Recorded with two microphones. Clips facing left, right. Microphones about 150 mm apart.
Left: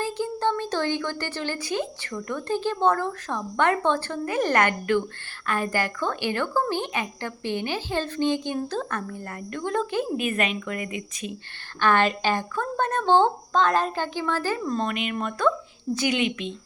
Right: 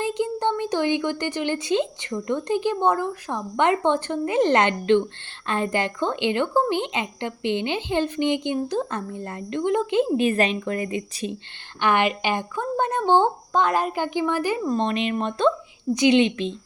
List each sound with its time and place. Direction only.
0.0 s a woman's voice: 20° right (ahead or behind)
11.8 s speech: 15° right (ahead or behind)
14.8 s a woman's voice: 30° right (ahead or behind)